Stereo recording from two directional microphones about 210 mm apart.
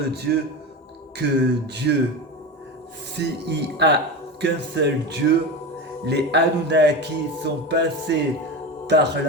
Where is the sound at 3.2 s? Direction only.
55° right (ahead or behind).